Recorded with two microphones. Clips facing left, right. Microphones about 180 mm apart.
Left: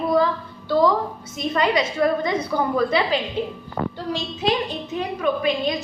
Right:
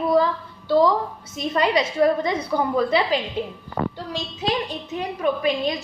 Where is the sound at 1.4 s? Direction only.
35° right (ahead or behind).